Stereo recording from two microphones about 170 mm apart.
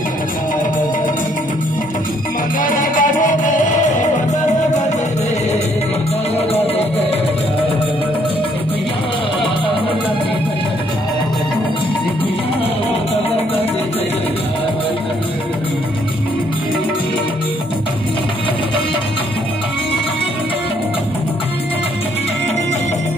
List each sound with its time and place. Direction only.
2.6 s music: 50° left (ahead or behind)